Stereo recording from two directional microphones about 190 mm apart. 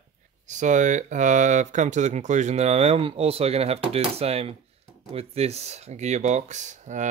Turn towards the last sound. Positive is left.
turn(degrees=-40)  # may be behind; listen again after turning